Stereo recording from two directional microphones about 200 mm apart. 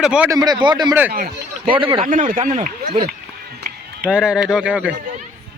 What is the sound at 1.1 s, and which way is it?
Speech, 50° right (ahead or behind).